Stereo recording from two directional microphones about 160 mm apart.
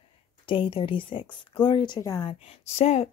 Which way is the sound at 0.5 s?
30° left (ahead or behind).